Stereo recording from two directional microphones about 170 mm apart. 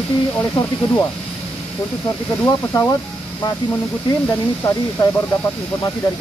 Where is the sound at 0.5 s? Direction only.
15° left (ahead or behind).